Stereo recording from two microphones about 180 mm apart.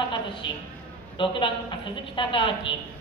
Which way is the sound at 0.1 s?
25° left (ahead or behind).